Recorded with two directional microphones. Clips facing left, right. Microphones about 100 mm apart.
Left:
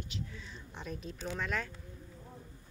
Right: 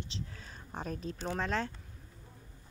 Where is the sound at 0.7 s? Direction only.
45° right (ahead or behind).